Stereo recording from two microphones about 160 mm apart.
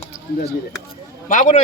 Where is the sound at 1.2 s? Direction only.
55° left (ahead or behind).